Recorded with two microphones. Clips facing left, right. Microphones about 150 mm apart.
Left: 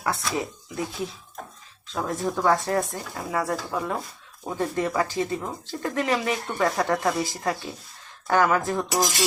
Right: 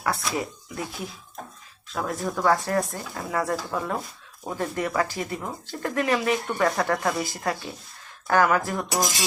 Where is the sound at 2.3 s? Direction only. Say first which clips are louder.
Even; 20° left (ahead or behind).